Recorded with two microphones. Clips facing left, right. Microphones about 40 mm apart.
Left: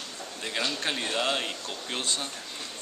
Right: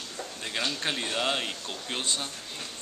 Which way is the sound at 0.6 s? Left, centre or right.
Centre.